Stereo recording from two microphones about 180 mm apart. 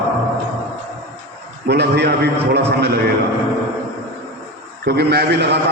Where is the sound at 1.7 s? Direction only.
65° right (ahead or behind).